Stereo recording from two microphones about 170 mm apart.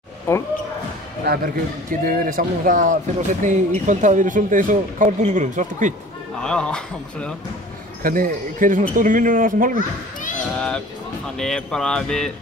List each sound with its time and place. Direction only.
0.3 s speech: 15° left (ahead or behind)
1.2 s speech: 60° right (ahead or behind); by 5.9 s 45° right (ahead or behind)
6.4 s speech: 5° left (ahead or behind)
8.0 s speech: 55° right (ahead or behind)
10.5 s music: 5° left (ahead or behind)
11.3 s speech: 5° left (ahead or behind)